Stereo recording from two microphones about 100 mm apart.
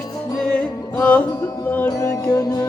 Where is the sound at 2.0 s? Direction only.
35° left (ahead or behind).